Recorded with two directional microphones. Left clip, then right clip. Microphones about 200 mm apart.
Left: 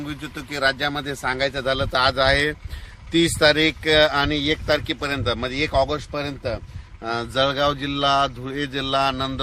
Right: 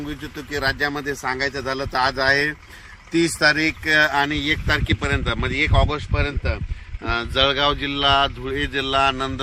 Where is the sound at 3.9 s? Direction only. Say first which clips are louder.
Right 1 dB; 55° left (ahead or behind).